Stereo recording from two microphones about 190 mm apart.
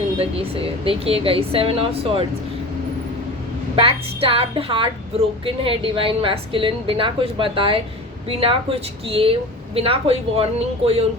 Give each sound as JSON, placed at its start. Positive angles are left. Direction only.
{"t": 0.2, "sound": "a woman's voice", "side_deg": -30}
{"t": 3.8, "sound": "a woman's voice", "side_deg": -30}